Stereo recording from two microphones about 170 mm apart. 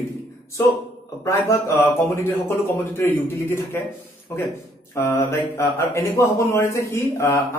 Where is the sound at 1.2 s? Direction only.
15° left (ahead or behind).